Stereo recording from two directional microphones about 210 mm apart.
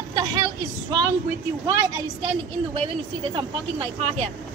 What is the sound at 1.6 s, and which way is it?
Speech, 20° right (ahead or behind).